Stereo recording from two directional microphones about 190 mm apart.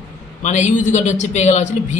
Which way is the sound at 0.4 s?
40° left (ahead or behind).